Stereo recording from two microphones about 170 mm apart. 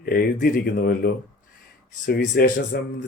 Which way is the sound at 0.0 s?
60° left (ahead or behind).